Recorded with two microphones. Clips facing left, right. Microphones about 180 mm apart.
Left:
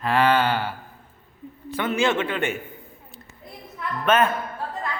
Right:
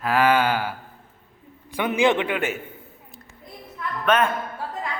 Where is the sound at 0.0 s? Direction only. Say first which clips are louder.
Even; 5° right (ahead or behind).